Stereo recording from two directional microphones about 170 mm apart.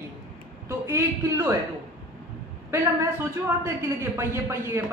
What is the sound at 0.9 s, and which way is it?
Speech, 15° right (ahead or behind).